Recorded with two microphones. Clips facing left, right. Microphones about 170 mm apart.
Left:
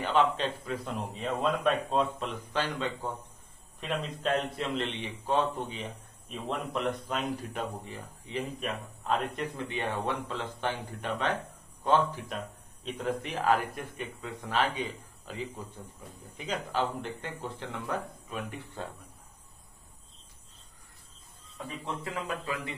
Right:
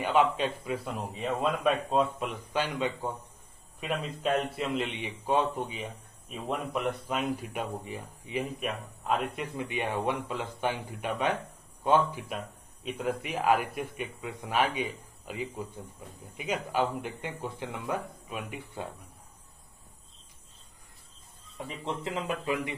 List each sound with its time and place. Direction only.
0.0 s a man's voice: 10° right (ahead or behind)
21.6 s speech: 20° right (ahead or behind)